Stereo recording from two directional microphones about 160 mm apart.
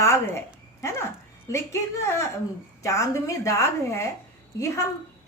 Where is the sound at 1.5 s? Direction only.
15° left (ahead or behind).